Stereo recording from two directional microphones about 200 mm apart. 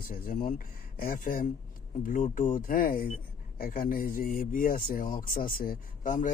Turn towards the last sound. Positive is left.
turn(degrees=40)  # may be behind; listen again after turning